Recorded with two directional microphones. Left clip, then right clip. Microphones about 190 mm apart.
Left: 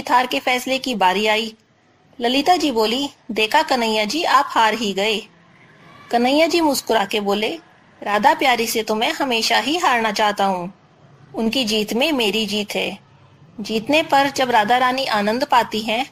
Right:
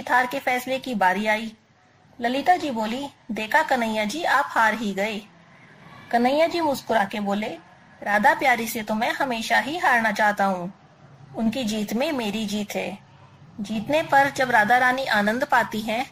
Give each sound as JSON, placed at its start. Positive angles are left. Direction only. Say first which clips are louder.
{"t": 0.0, "sound": "a woman's voice", "louder": "left 4 dB", "side_deg": 25}
{"t": 11.8, "sound": "a woman's voice", "louder": "left 7 dB", "side_deg": 25}
{"t": 13.9, "sound": "a woman's voice", "louder": "left 3 dB", "side_deg": 25}